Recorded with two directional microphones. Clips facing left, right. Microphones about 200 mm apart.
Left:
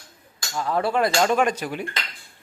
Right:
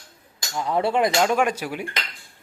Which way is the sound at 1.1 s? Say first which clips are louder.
Even; 10° right (ahead or behind).